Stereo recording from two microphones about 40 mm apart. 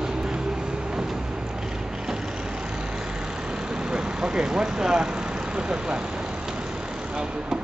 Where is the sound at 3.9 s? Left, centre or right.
Centre.